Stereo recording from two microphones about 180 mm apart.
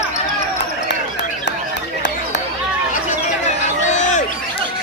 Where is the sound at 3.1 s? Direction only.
40° left (ahead or behind).